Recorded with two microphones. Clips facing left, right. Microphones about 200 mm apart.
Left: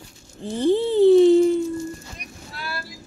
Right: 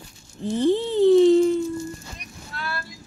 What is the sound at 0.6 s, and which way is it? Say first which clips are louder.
Cat: left 2 dB; 15° left (ahead or behind).